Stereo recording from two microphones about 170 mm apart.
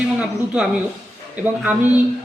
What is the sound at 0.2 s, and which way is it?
A man's voice, 5° right (ahead or behind).